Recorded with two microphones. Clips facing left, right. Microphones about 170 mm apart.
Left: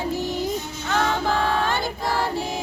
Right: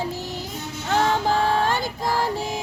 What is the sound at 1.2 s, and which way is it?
Music, 40° right (ahead or behind).